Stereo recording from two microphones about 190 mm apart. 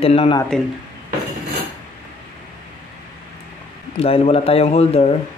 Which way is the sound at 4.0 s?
30° left (ahead or behind).